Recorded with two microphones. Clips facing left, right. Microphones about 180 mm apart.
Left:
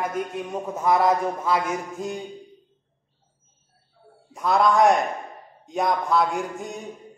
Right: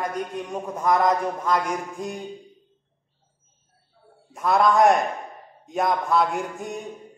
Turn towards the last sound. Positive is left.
turn(degrees=0)  # may be behind; listen again after turning